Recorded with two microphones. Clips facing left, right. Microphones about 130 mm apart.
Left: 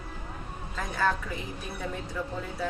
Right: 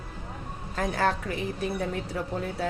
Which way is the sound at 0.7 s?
70° right (ahead or behind).